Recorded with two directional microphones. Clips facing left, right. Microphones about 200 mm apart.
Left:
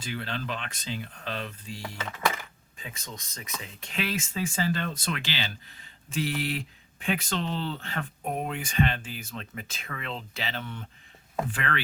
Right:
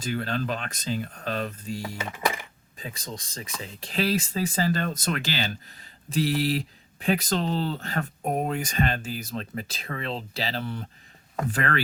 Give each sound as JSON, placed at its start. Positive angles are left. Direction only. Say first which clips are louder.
{"t": 0.0, "sound": "speech", "louder": "right 6 dB", "side_deg": -45}
{"t": 2.0, "sound": "speech", "louder": "even", "side_deg": -15}
{"t": 2.7, "sound": "speech", "louder": "right 5 dB", "side_deg": -35}